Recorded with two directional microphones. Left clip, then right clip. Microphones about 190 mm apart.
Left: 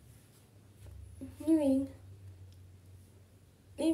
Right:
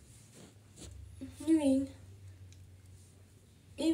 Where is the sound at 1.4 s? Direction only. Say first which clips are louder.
Even; 5° right (ahead or behind).